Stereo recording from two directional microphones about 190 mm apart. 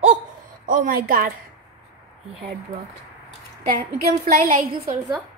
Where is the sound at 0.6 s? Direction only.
45° right (ahead or behind).